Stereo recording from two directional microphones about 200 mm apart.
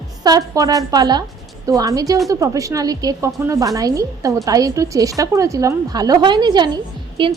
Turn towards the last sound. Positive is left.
turn(degrees=-25)  # may be behind; listen again after turning